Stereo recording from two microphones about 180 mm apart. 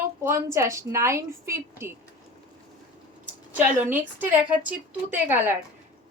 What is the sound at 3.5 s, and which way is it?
Speech, 10° right (ahead or behind).